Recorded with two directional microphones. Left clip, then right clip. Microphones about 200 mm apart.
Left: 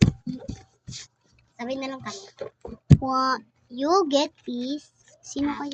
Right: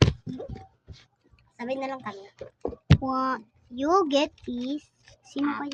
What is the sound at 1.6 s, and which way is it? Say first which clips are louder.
Speech: even; 15° right (ahead or behind).